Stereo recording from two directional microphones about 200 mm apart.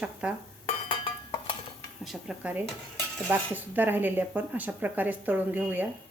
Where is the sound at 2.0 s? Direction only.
Centre (ahead or behind).